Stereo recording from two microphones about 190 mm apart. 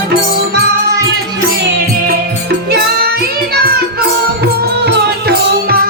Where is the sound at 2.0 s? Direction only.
55° right (ahead or behind).